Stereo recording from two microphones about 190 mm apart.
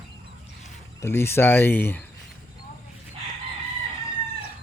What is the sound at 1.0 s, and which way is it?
Speech, 10° left (ahead or behind).